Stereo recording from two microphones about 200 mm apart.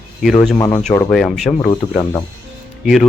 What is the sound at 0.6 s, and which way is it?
Speech, 20° left (ahead or behind).